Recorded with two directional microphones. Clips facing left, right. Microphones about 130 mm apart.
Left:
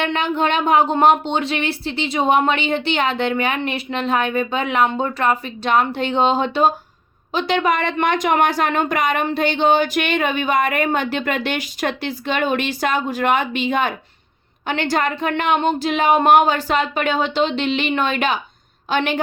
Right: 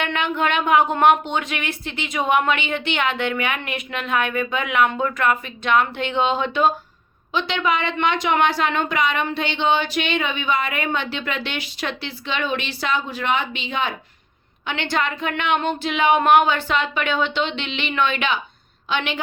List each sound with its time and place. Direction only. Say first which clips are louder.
0.0 s a woman's voice: left 3 dB; 35° left (ahead or behind)